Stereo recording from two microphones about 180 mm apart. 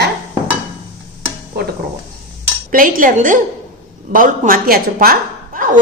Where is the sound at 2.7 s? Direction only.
50° right (ahead or behind).